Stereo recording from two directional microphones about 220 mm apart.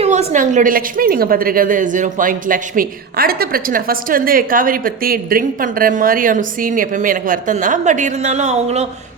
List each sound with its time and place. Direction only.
0.0 s a woman's voice: 30° right (ahead or behind)